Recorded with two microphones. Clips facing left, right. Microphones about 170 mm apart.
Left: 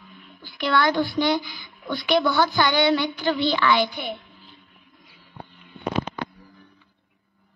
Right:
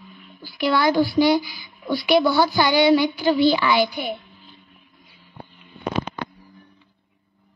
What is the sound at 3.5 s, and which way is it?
Speech, 15° right (ahead or behind).